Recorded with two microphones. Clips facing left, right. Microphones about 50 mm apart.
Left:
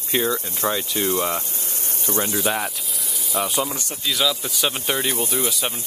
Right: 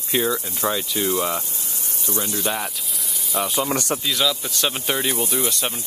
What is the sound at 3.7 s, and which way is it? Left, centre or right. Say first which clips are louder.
Speech: right 9 dB; right.